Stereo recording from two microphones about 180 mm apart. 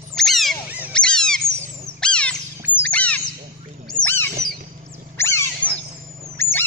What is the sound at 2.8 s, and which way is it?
Bird, 10° left (ahead or behind).